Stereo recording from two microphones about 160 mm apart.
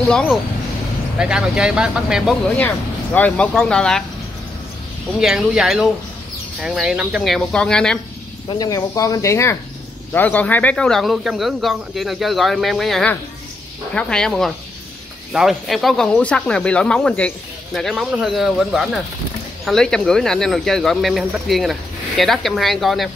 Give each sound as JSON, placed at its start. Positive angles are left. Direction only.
{"t": 0.0, "sound": "speech", "side_deg": 5}
{"t": 5.2, "sound": "speech", "side_deg": 0}
{"t": 8.5, "sound": "speech", "side_deg": 25}